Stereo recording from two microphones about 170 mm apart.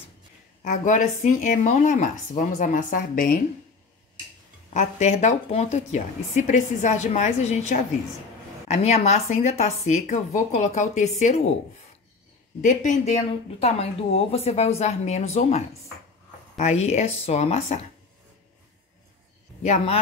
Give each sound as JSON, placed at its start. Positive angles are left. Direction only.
{"t": 0.7, "sound": "a woman's voice", "side_deg": 50}
{"t": 4.7, "sound": "a woman's voice", "side_deg": 40}
{"t": 12.6, "sound": "speech", "side_deg": 45}
{"t": 19.6, "sound": "a woman's voice", "side_deg": 45}